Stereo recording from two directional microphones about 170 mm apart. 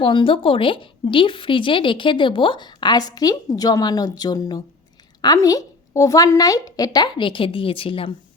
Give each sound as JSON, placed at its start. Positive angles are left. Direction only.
{"t": 0.0, "sound": "a woman's voice", "side_deg": 30}